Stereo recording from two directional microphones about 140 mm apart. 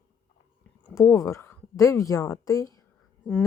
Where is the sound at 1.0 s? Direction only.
20° left (ahead or behind).